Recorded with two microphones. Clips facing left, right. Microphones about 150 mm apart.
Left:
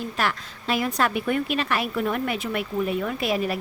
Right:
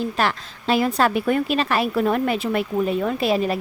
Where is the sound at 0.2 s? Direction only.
30° right (ahead or behind).